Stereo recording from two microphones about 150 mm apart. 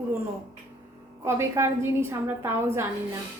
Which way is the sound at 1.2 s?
15° right (ahead or behind).